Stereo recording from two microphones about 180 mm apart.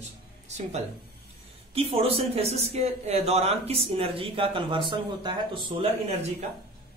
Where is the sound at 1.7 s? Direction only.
30° right (ahead or behind).